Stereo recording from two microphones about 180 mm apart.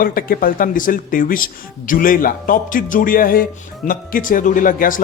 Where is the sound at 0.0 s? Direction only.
50° left (ahead or behind).